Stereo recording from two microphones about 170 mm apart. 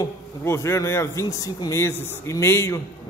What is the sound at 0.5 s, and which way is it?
A man's voice, 15° left (ahead or behind).